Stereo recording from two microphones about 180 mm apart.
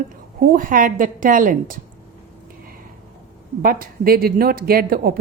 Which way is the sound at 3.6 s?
55° right (ahead or behind).